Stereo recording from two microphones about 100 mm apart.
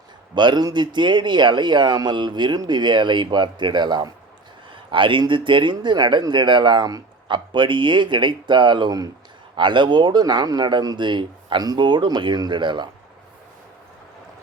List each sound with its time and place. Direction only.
0.3 s speech: 50° right (ahead or behind)